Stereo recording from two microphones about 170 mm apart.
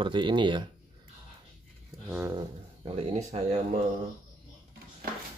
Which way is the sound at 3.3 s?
40° right (ahead or behind).